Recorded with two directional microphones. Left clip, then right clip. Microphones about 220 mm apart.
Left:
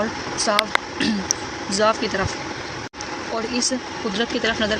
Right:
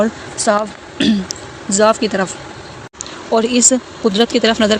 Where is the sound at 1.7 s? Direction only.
30° right (ahead or behind).